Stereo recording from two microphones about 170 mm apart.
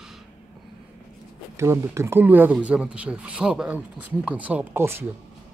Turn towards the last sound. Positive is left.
turn(degrees=-15)  # may be behind; listen again after turning